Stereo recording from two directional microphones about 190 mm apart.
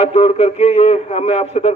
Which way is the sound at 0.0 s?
35° left (ahead or behind).